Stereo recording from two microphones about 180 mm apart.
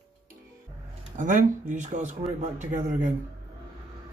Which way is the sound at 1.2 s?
45° right (ahead or behind).